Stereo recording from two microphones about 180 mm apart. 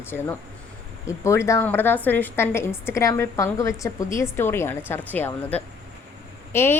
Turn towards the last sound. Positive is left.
turn(degrees=15)  # may be behind; listen again after turning